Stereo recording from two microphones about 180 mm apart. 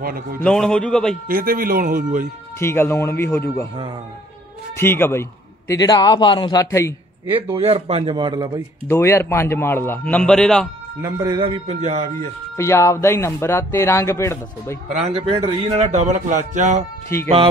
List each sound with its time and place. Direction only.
0.0 s speech: 55° right (ahead or behind)
0.4 s speech: 5° left (ahead or behind)
1.2 s speech: 55° right (ahead or behind)
2.6 s speech: 15° left (ahead or behind)
4.7 s a man's voice: 15° left (ahead or behind)
7.5 s a man's voice: 35° right (ahead or behind)
8.8 s speech: 15° left (ahead or behind)
11.0 s a man's voice: 20° right (ahead or behind); by 12.3 s 40° right (ahead or behind)
12.5 s speech: 15° left (ahead or behind)
15.0 s speech: 35° right (ahead or behind)